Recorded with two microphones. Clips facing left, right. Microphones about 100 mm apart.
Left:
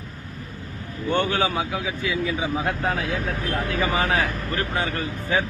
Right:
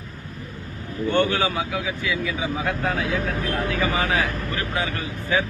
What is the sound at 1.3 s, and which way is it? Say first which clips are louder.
Speech: even; 25° left (ahead or behind).